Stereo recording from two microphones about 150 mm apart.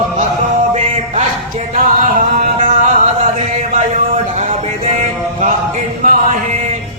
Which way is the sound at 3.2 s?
45° right (ahead or behind).